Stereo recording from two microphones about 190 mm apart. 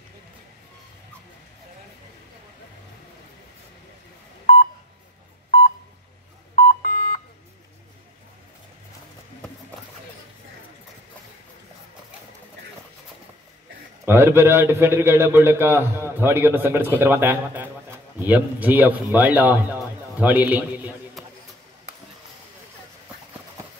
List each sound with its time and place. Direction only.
6.5 s beep: 45° left (ahead or behind)
14.0 s a man's voice: 10° right (ahead or behind)